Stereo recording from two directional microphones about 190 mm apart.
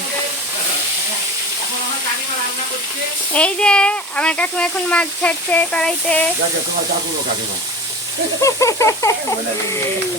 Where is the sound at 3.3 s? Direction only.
5° left (ahead or behind).